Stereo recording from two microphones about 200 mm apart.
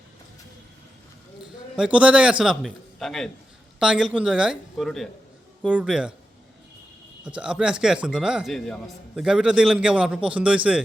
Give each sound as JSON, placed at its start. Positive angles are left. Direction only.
{"t": 1.4, "sound": "a sound", "side_deg": -5}
{"t": 2.4, "sound": "a man's voice", "side_deg": 0}
{"t": 7.3, "sound": "a man's voice", "side_deg": -5}